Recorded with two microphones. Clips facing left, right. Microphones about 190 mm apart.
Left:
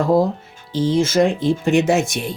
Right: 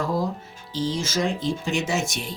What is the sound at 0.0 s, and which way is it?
Speech, 60° left (ahead or behind).